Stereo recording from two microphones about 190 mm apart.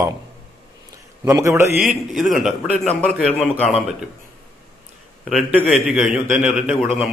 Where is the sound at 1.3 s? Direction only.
15° right (ahead or behind).